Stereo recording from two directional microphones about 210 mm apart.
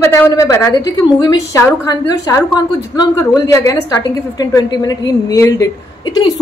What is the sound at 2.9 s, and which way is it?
A woman's voice, 15° left (ahead or behind).